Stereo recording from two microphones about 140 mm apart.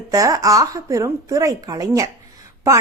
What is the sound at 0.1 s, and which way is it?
Speech, 25° right (ahead or behind).